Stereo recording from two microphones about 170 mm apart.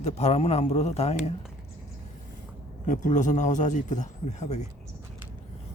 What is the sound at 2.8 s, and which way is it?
A man's voice, 50° left (ahead or behind).